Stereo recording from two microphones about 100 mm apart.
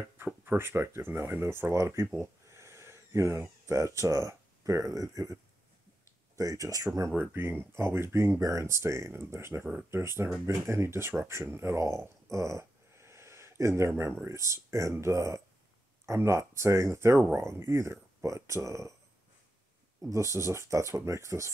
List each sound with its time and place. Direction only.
0.2 s speech: 20° right (ahead or behind)
7.1 s speech: 20° right (ahead or behind)
20.1 s speech: 30° right (ahead or behind)